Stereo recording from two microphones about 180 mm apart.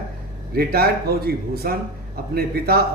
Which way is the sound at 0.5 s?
55° right (ahead or behind).